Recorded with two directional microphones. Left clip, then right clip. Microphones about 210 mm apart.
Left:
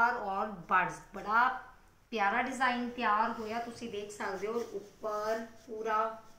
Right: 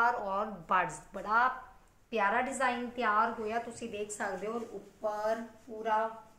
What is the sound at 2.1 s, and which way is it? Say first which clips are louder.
A woman's voice: right 1 dB; 50° right (ahead or behind).